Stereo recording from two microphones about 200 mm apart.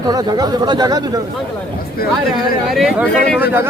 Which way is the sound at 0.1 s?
20° right (ahead or behind).